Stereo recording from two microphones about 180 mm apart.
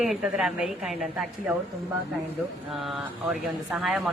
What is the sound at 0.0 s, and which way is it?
Speech, centre (ahead or behind).